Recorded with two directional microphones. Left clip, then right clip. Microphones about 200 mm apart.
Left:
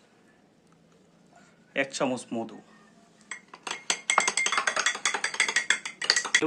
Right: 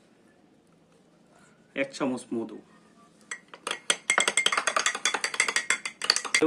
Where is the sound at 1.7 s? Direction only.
45° left (ahead or behind).